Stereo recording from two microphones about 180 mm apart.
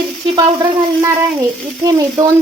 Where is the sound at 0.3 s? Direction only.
20° right (ahead or behind).